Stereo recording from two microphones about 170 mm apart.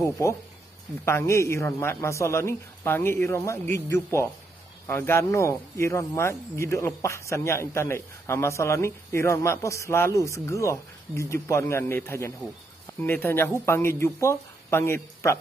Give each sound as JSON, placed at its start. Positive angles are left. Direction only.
{"t": 0.0, "sound": "a man's voice", "side_deg": 15}